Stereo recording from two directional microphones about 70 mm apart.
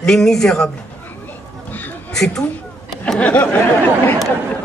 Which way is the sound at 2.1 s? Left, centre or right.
Centre.